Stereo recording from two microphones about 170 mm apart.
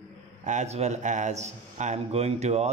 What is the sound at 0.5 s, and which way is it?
A man's voice, 40° right (ahead or behind).